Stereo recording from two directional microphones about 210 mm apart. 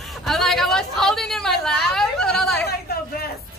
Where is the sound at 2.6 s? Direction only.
45° left (ahead or behind).